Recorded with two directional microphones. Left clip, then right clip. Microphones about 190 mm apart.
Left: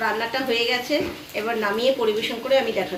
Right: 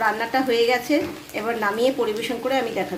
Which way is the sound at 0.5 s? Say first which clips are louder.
Right 2 dB; 75° right (ahead or behind).